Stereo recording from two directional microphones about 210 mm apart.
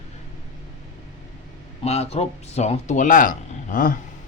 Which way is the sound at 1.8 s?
30° left (ahead or behind).